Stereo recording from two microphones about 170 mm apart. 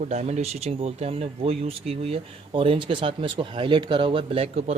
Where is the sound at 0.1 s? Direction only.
40° right (ahead or behind).